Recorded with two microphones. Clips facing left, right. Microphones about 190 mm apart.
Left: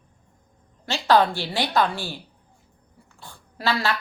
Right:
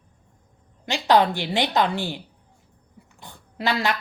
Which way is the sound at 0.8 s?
15° right (ahead or behind).